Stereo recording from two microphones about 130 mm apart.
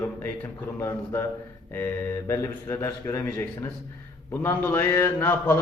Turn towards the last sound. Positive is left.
turn(degrees=20)  # may be behind; listen again after turning